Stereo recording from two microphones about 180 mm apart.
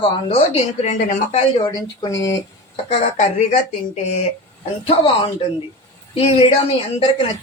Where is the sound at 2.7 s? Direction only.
30° left (ahead or behind).